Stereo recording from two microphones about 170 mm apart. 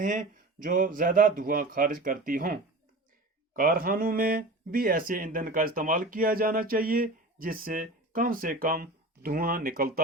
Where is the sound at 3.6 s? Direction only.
55° right (ahead or behind).